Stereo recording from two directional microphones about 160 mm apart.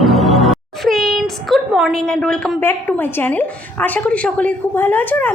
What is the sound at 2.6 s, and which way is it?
A woman's voice, 15° left (ahead or behind).